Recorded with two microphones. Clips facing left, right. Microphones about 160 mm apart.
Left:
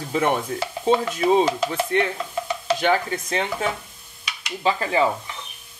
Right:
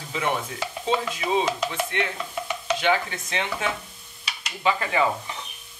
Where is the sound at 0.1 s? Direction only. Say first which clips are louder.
Left 5 dB; 45° left (ahead or behind).